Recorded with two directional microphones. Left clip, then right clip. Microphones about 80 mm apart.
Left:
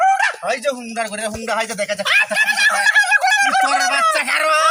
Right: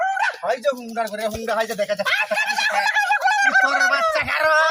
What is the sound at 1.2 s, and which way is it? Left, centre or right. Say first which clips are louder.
Speech: left 1 dB; left.